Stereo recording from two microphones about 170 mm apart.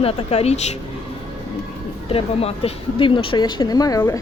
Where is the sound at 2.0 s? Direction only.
35° left (ahead or behind); by 4.2 s 20° left (ahead or behind).